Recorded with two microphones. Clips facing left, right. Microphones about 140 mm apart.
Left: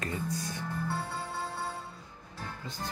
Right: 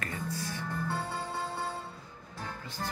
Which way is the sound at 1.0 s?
15° right (ahead or behind).